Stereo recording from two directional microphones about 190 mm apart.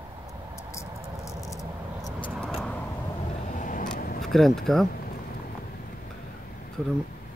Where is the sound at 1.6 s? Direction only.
20° left (ahead or behind).